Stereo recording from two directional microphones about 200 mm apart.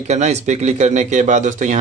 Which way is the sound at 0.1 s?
35° right (ahead or behind).